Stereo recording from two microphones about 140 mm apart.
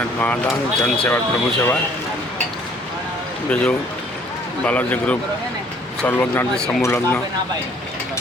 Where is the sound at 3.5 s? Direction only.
10° left (ahead or behind).